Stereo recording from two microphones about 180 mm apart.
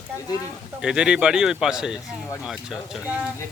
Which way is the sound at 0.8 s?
5° right (ahead or behind).